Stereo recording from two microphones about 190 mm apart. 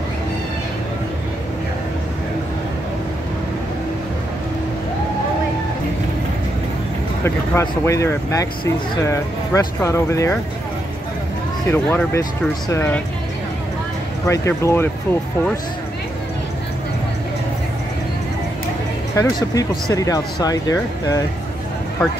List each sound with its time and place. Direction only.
7.2 s speech: 15° left (ahead or behind)
11.7 s speech: 10° left (ahead or behind)
14.2 s speech: 15° left (ahead or behind)
19.1 s speech: 20° left (ahead or behind)